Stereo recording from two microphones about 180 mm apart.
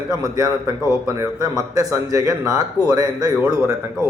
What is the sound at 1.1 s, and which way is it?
Speech, 20° right (ahead or behind).